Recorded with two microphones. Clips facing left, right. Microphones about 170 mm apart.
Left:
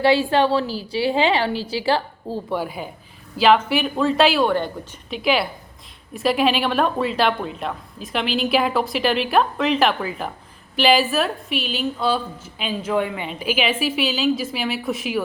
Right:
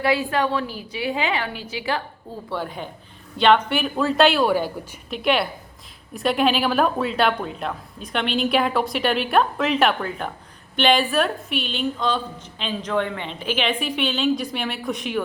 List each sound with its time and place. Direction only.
0.0 s a woman's voice: 30° left (ahead or behind)
2.5 s a woman's voice: 10° left (ahead or behind)